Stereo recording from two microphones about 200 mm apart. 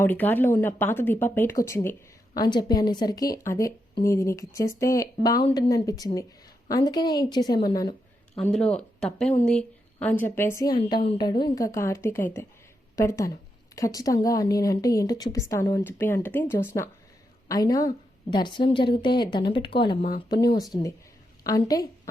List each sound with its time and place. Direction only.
0.0 s a woman's voice: 10° left (ahead or behind)
8.4 s a woman's voice: 5° left (ahead or behind); by 19.8 s 25° left (ahead or behind)
21.4 s a woman's voice: 20° left (ahead or behind)